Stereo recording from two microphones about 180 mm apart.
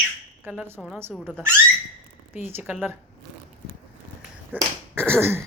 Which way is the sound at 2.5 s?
10° right (ahead or behind).